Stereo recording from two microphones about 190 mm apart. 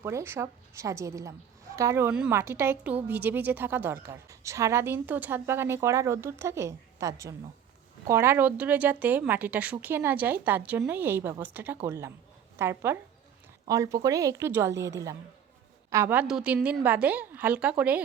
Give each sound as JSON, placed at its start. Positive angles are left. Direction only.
{"t": 0.0, "sound": "a woman's voice", "side_deg": -15}